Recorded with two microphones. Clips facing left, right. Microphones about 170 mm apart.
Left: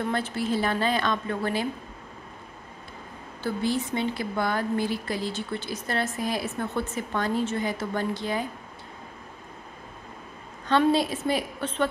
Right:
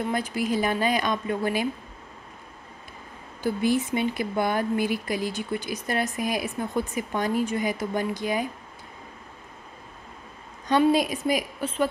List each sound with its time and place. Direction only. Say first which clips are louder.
0.1 s speech: right 1 dB; 15° right (ahead or behind)
3.4 s speech: right 3 dB; 20° right (ahead or behind)
10.7 s speech: right 1 dB; 15° right (ahead or behind)